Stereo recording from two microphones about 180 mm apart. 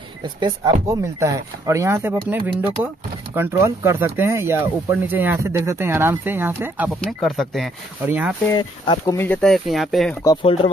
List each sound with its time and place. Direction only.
0.8 s speech: 15° right (ahead or behind)
8.5 s speech: 25° left (ahead or behind)
9.1 s speech: 10° left (ahead or behind)
10.2 s speech: 30° left (ahead or behind)